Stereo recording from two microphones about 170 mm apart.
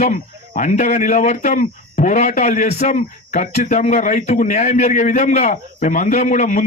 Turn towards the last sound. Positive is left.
turn(degrees=45)  # may be behind; listen again after turning